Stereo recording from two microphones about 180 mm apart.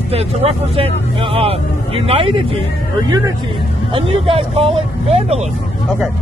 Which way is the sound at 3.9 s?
30° right (ahead or behind).